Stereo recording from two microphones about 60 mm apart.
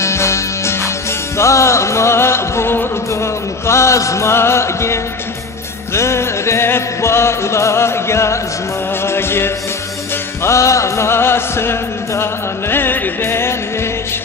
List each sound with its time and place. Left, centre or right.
0.0 s music: left
3.6 s music: left
10.4 s music: left